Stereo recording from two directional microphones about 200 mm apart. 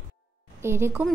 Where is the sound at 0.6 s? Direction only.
10° right (ahead or behind).